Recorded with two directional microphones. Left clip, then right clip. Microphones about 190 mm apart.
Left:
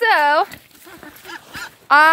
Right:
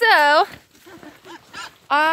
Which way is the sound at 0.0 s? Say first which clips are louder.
Right 1 dB; 30° right (ahead or behind).